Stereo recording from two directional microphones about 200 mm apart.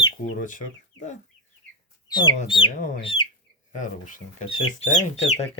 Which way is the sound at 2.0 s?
20° left (ahead or behind).